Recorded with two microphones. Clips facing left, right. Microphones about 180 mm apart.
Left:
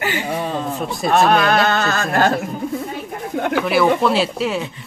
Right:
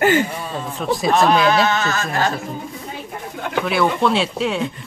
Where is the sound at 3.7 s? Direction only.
5° left (ahead or behind).